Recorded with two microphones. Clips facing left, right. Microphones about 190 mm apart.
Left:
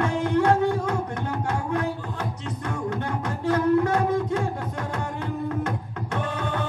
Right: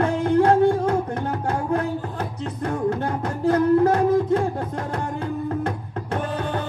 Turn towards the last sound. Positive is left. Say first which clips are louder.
# right 2 dB
turn(degrees=-30)  # may be behind; listen again after turning